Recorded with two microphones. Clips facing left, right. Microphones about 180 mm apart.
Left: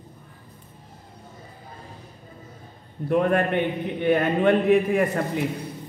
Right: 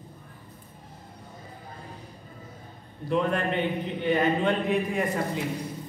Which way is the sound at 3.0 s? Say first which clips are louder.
Left 5 dB; 55° left (ahead or behind).